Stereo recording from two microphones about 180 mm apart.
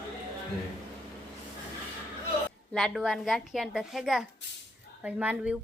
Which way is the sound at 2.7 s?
Centre (ahead or behind).